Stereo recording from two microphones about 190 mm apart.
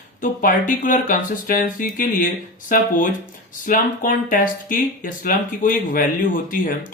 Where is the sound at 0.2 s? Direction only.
45° left (ahead or behind).